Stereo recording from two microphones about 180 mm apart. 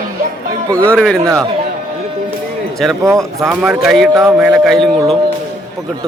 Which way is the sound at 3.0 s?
15° right (ahead or behind).